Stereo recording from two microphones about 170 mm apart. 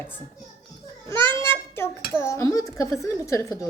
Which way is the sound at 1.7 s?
15° left (ahead or behind).